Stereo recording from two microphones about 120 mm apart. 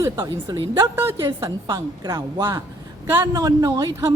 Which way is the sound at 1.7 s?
30° right (ahead or behind).